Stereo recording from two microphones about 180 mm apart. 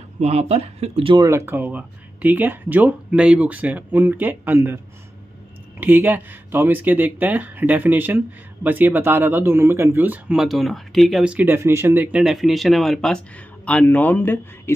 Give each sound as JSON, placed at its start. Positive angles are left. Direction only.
{"t": 0.2, "sound": "speech", "side_deg": -35}
{"t": 1.2, "sound": "speech", "side_deg": -15}
{"t": 5.8, "sound": "a man's voice", "side_deg": -10}